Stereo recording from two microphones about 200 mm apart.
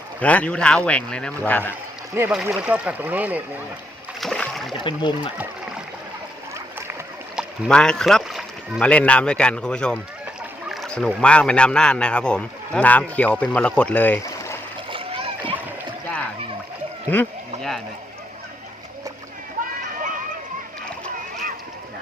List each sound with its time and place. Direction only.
0.2 s a man's voice: 5° left (ahead or behind)
2.1 s speech: 10° right (ahead or behind)
4.2 s splash: centre (ahead or behind)
4.8 s speech: 25° left (ahead or behind)
7.3 s a man's voice: 5° left (ahead or behind)
10.7 s rowboat: centre (ahead or behind)
11.2 s a man's voice: 5° left (ahead or behind)
14.8 s splash: 25° right (ahead or behind)
17.1 s a sound: 5° left (ahead or behind)
20.0 s a sound: 40° right (ahead or behind)